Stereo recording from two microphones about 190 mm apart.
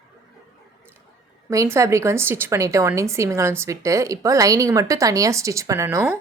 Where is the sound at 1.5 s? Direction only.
15° right (ahead or behind).